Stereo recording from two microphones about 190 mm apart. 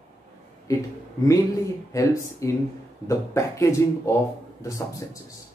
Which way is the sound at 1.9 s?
15° left (ahead or behind).